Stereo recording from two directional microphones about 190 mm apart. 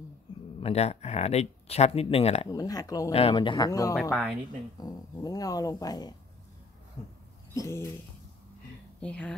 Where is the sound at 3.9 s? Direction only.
Centre (ahead or behind).